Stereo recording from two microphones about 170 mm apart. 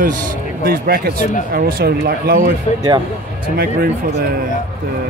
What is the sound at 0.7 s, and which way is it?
Speech, 60° right (ahead or behind).